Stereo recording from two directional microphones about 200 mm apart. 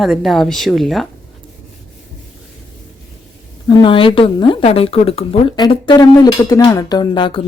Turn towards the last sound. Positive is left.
turn(degrees=25)  # may be behind; listen again after turning